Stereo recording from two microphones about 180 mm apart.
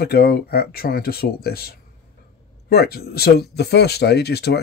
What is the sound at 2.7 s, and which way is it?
Speech, 60° left (ahead or behind).